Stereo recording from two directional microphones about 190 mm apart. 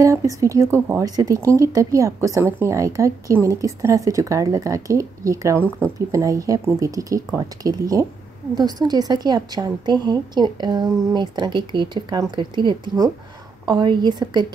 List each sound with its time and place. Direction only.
0.0 s a woman's voice: 15° right (ahead or behind)